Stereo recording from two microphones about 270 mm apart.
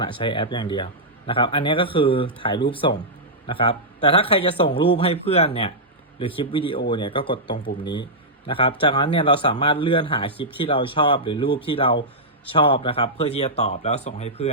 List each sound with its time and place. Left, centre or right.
0.0 s a man's voice: centre